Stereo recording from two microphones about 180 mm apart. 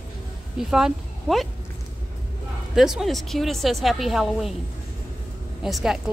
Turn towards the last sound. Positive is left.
turn(degrees=0)  # may be behind; listen again after turning